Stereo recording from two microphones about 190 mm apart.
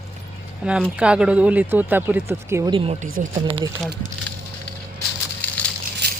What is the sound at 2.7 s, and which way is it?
Speech, 30° right (ahead or behind).